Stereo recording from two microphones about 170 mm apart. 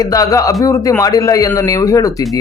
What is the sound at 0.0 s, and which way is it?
Speech, 20° left (ahead or behind).